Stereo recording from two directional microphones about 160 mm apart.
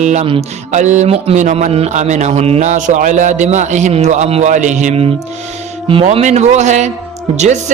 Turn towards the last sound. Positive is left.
turn(degrees=-45)  # may be behind; listen again after turning